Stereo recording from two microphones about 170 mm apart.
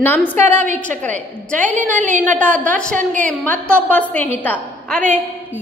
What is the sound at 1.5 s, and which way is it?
Speech, 50° right (ahead or behind).